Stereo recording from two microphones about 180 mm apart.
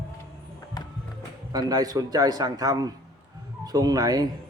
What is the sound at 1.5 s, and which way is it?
Speech, 20° right (ahead or behind).